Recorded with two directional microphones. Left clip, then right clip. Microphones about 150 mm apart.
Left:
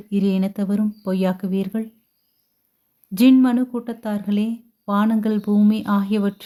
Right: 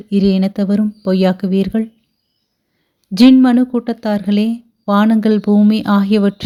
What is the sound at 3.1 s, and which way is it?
Speech, 30° right (ahead or behind).